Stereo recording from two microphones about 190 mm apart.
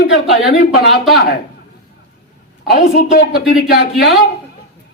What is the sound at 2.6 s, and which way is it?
A woman's voice, 50° left (ahead or behind).